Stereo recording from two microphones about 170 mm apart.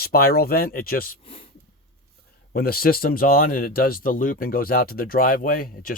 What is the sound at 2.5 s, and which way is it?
Speech, 60° left (ahead or behind).